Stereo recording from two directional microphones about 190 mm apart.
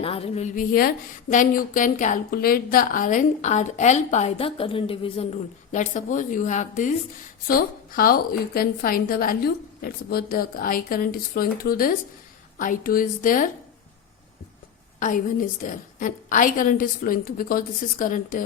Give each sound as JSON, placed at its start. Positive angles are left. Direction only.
{"t": 0.0, "sound": "a woman's voice", "side_deg": 30}
{"t": 5.7, "sound": "a woman's voice", "side_deg": 40}
{"t": 14.9, "sound": "a woman's voice", "side_deg": 45}